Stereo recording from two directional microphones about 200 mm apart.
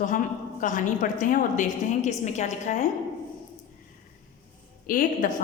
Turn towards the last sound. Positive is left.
turn(degrees=40)  # may be behind; listen again after turning